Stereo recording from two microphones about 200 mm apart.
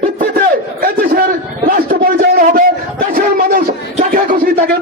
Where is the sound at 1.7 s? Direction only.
45° right (ahead or behind).